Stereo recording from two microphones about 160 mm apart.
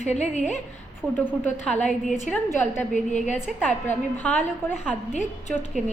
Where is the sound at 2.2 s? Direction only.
10° left (ahead or behind).